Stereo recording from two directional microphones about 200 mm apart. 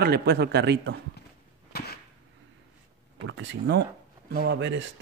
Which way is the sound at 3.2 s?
65° right (ahead or behind).